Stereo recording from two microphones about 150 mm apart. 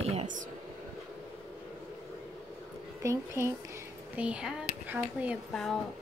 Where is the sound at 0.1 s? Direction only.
50° right (ahead or behind).